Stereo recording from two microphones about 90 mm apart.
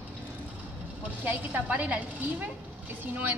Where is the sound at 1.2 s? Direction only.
20° right (ahead or behind).